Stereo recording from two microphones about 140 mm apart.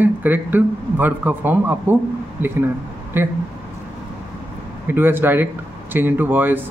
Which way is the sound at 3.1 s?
15° right (ahead or behind).